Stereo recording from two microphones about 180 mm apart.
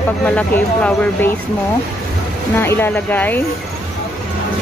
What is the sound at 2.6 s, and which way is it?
Speech, 10° left (ahead or behind).